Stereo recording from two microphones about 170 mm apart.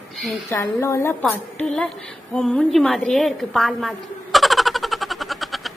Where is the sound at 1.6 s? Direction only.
5° left (ahead or behind).